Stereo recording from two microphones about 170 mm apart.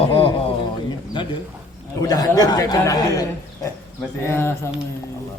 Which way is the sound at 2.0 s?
20° left (ahead or behind).